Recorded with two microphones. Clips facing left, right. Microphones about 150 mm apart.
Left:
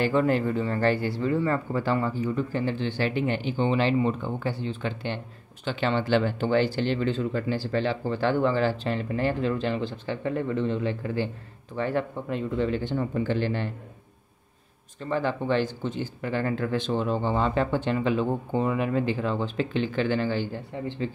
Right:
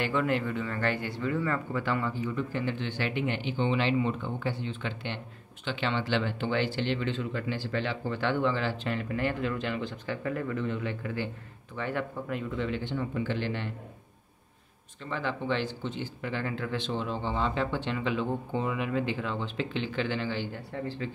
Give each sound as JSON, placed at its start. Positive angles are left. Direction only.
{"t": 0.0, "sound": "speech", "side_deg": 35}
{"t": 15.0, "sound": "speech", "side_deg": 40}
{"t": 20.7, "sound": "speech", "side_deg": 20}